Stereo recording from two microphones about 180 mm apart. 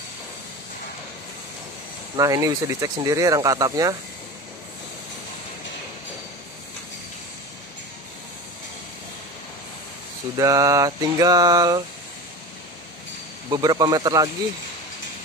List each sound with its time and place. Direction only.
2.1 s speech: 20° right (ahead or behind)
10.3 s speech: 20° right (ahead or behind)
13.5 s speech: 20° right (ahead or behind)